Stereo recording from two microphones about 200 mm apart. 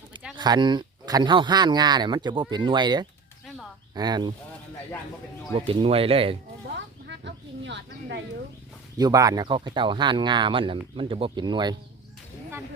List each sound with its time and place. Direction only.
0.3 s speech: 20° right (ahead or behind)
5.5 s speech: 30° right (ahead or behind)
6.7 s a sound: 60° right (ahead or behind)
9.0 s speech: 20° right (ahead or behind)